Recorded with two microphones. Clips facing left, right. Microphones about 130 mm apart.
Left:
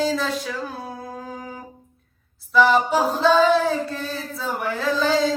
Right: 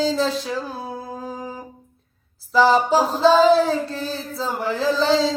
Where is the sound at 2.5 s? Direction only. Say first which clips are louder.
Right 1 dB; 30° right (ahead or behind).